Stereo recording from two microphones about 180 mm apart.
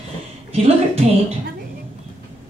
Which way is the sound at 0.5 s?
35° right (ahead or behind).